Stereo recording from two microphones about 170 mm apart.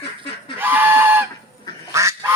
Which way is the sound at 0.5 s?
10° right (ahead or behind).